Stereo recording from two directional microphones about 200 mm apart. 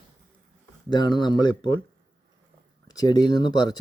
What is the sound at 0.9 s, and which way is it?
Speech, 20° left (ahead or behind).